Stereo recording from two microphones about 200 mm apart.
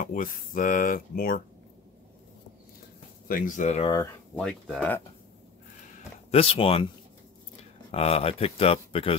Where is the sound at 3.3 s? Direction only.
40° left (ahead or behind).